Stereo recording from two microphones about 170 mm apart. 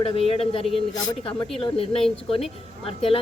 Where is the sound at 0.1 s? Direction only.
35° left (ahead or behind).